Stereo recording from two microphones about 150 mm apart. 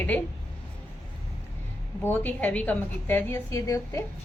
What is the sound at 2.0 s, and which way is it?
A woman's voice, 10° left (ahead or behind).